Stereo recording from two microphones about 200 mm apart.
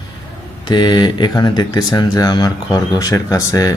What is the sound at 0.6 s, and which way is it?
Speech, 20° left (ahead or behind).